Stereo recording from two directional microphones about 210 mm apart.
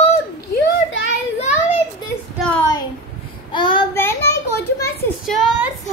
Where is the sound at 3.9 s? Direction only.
10° left (ahead or behind).